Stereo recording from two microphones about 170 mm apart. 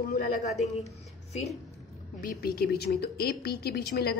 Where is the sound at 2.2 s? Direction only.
60° left (ahead or behind).